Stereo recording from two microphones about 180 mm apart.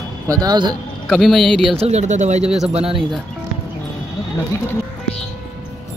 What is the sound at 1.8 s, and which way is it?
Speech, 35° right (ahead or behind).